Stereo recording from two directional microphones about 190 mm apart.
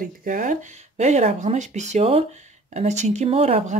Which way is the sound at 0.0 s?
45° right (ahead or behind).